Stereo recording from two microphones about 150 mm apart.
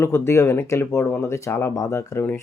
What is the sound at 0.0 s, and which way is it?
A man's voice, 15° left (ahead or behind).